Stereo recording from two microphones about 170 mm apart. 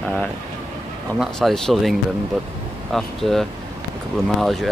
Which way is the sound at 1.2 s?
Centre (ahead or behind).